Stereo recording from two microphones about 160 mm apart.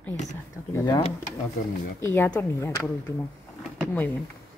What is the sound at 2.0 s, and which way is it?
Speech, 15° left (ahead or behind).